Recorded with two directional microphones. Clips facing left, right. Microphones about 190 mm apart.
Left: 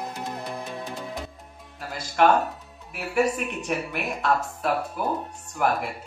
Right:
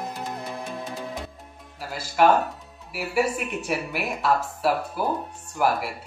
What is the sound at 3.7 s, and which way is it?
Speech, 5° right (ahead or behind).